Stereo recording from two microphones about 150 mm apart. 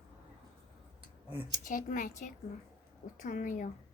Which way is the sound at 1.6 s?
60° left (ahead or behind).